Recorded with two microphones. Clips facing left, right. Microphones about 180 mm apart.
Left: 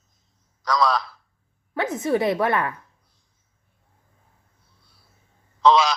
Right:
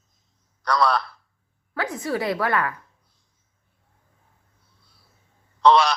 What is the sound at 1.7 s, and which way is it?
A woman's voice, 20° left (ahead or behind).